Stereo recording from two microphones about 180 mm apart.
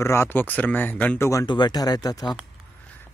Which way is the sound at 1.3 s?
20° left (ahead or behind).